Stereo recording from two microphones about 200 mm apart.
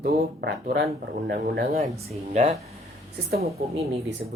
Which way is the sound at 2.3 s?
35° right (ahead or behind).